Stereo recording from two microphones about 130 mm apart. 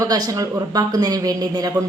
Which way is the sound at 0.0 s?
30° right (ahead or behind).